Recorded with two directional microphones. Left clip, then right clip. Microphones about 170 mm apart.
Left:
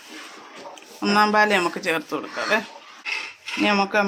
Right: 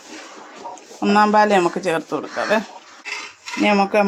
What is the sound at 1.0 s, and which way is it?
Speech, 55° right (ahead or behind).